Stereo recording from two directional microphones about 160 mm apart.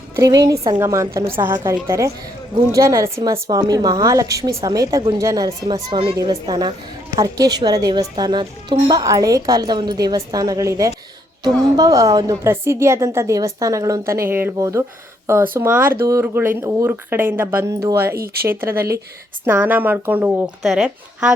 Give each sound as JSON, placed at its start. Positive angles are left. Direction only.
{"t": 0.2, "sound": "a woman's voice", "side_deg": -20}